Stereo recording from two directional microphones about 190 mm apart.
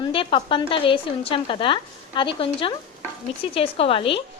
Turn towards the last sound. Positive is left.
turn(degrees=30)  # may be behind; listen again after turning